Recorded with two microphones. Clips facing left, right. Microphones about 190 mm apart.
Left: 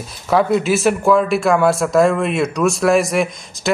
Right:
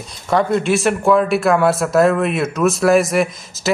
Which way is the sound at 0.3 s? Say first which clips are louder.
Left 1 dB; centre (ahead or behind).